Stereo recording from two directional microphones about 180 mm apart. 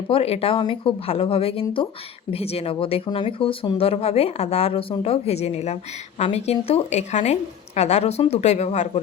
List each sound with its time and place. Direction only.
0.1 s speech: 35° left (ahead or behind)